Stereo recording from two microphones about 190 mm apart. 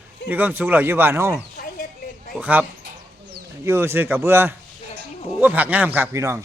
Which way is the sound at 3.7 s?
10° right (ahead or behind).